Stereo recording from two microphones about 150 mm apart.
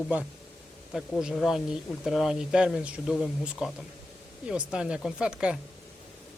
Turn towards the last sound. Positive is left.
turn(degrees=-5)  # may be behind; listen again after turning